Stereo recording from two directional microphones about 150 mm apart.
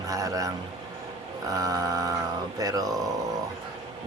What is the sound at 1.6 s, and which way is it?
Speech, 25° right (ahead or behind).